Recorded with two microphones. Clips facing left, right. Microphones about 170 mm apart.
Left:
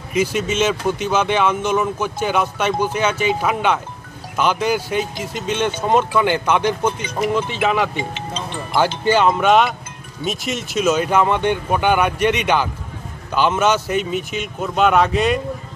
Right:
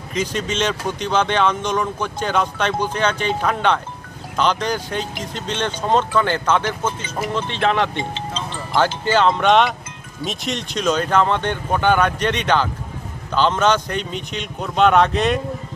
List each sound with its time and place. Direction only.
0.1 s a man's voice: 10° left (ahead or behind)